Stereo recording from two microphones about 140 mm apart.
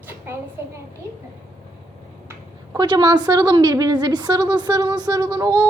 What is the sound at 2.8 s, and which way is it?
A woman's voice, 30° right (ahead or behind).